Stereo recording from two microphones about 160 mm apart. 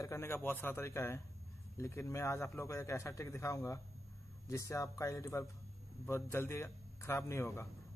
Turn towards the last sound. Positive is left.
turn(degrees=15)  # may be behind; listen again after turning